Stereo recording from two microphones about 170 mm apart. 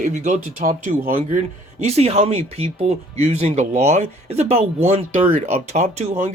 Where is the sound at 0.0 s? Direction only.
45° right (ahead or behind).